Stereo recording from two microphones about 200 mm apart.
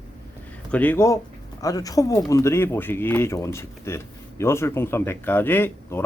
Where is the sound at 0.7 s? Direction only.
10° left (ahead or behind).